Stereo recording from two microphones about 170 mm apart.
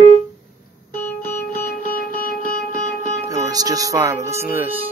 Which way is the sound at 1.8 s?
60° left (ahead or behind).